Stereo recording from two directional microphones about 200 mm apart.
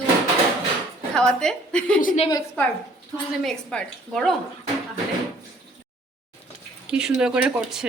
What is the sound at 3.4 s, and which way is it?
Speech, 5° left (ahead or behind).